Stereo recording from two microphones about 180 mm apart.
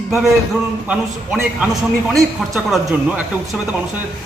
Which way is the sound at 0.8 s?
5° right (ahead or behind).